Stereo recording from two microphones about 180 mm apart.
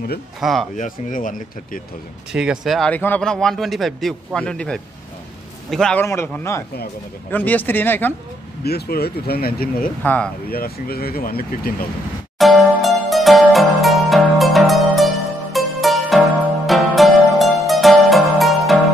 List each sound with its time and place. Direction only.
0.4 s a man's voice: centre (ahead or behind)
0.7 s speech: 45° left (ahead or behind)
2.3 s a man's voice: 5° right (ahead or behind); by 8.1 s 10° left (ahead or behind)
8.6 s speech: 60° left (ahead or behind)
10.0 s speech: 10° left (ahead or behind)
10.5 s speech: 55° left (ahead or behind)
12.4 s music: centre (ahead or behind)